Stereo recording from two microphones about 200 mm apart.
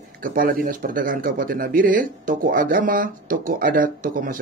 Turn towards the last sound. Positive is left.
turn(degrees=-45)  # may be behind; listen again after turning